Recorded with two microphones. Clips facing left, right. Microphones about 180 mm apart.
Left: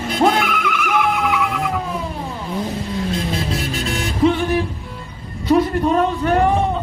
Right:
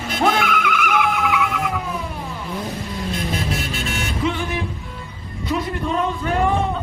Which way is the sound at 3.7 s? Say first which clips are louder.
Left 3 dB; 35° left (ahead or behind).